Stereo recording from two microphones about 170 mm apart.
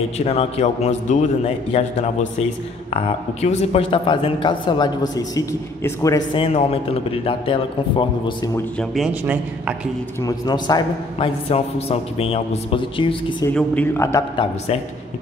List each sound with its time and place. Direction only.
0.2 s a man's voice: 35° left (ahead or behind)
8.7 s speech: centre (ahead or behind)
10.2 s a man's voice: 25° left (ahead or behind)
13.5 s speech: 10° left (ahead or behind)
14.3 s a man's voice: 30° left (ahead or behind)